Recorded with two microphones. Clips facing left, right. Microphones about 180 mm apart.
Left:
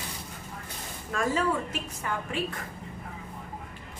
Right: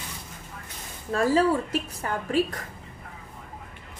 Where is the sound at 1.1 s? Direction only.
35° right (ahead or behind).